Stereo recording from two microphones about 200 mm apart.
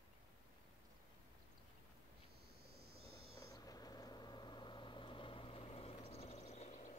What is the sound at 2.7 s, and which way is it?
Owl, 50° right (ahead or behind).